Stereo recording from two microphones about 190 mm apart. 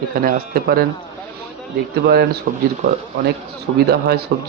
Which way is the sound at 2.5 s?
50° right (ahead or behind).